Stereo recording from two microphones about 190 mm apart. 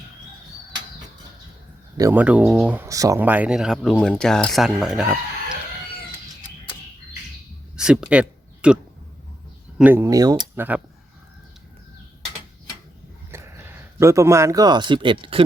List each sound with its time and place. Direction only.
2.0 s speech: 10° right (ahead or behind)
7.8 s a sound: 5° right (ahead or behind)
9.7 s speech: 10° right (ahead or behind)
13.3 s speech: 15° right (ahead or behind)